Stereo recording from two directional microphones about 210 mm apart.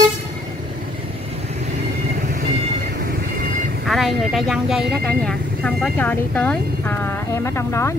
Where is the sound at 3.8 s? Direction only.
Centre (ahead or behind).